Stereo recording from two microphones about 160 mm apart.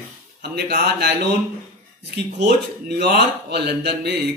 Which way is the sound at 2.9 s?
90° right.